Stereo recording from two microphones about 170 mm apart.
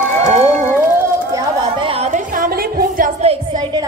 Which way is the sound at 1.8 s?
35° right (ahead or behind).